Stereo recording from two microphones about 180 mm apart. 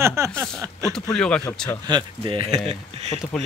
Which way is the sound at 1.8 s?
25° right (ahead or behind).